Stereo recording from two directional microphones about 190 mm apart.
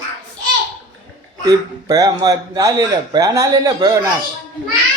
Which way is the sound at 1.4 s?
20° right (ahead or behind).